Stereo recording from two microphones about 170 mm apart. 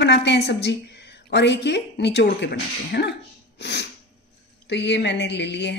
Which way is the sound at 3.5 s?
85° left.